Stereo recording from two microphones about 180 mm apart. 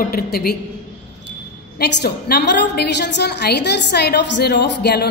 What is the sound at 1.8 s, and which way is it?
A woman's voice, 65° left (ahead or behind).